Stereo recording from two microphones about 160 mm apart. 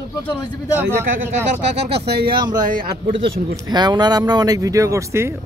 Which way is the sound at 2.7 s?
60° right (ahead or behind).